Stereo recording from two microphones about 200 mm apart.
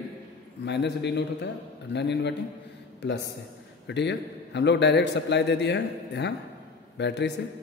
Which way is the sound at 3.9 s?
60° left (ahead or behind).